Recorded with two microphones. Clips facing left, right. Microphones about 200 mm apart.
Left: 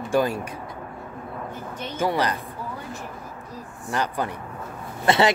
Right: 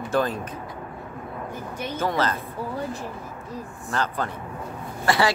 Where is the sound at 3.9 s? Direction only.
15° left (ahead or behind).